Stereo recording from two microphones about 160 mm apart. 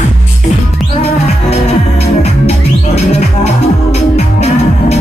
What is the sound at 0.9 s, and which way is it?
Music, 40° left (ahead or behind).